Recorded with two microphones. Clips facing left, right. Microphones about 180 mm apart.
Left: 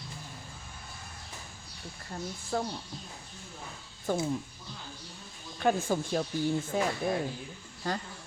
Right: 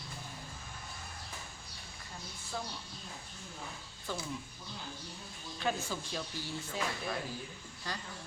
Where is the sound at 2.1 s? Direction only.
55° left (ahead or behind).